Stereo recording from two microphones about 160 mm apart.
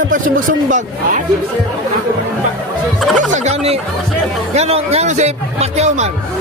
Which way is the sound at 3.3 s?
45° right (ahead or behind).